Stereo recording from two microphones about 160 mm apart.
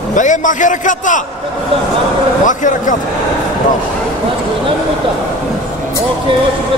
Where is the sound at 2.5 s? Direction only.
55° left (ahead or behind).